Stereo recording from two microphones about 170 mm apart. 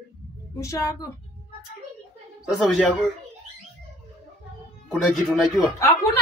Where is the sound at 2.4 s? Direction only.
Centre (ahead or behind).